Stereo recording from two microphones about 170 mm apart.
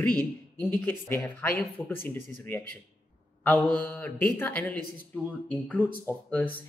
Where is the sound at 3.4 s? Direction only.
10° left (ahead or behind).